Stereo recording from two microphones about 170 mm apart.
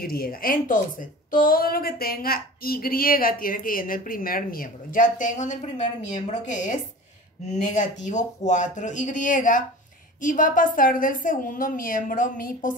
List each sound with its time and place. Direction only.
0.0 s a woman's voice: 60° left (ahead or behind)